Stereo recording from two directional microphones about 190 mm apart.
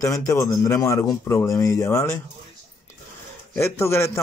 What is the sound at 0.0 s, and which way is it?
A man's voice, 15° left (ahead or behind).